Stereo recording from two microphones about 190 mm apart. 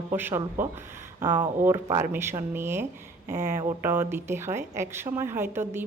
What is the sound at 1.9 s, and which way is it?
A woman's voice, 15° right (ahead or behind).